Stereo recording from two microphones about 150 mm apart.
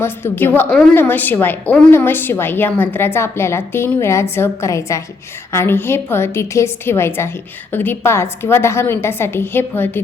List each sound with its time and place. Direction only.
0.0 s a woman's voice: 15° left (ahead or behind)